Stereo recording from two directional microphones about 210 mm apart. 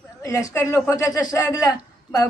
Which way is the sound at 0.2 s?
15° left (ahead or behind).